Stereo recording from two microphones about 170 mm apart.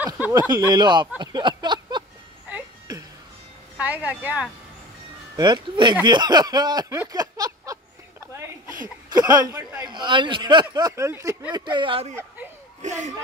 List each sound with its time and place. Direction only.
0.0 s a woman's voice: 10° right (ahead or behind)
0.5 s speech: 25° right (ahead or behind)
1.6 s a sound: 25° right (ahead or behind)
3.7 s a woman's voice: 10° right (ahead or behind)
5.3 s speech: 25° right (ahead or behind)
7.0 s a sound: 20° right (ahead or behind)
9.1 s speech: 25° right (ahead or behind); by 13.1 s 45° right (ahead or behind)